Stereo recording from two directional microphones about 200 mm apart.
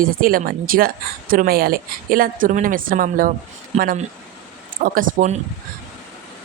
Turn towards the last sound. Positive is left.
turn(degrees=-40)  # may be behind; listen again after turning